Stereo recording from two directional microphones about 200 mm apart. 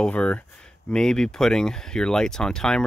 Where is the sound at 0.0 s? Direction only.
5° left (ahead or behind).